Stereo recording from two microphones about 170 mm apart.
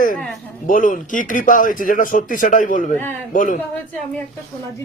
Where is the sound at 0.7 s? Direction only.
50° left (ahead or behind).